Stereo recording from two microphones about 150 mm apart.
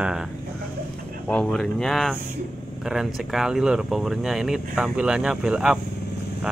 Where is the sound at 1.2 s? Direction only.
5° left (ahead or behind).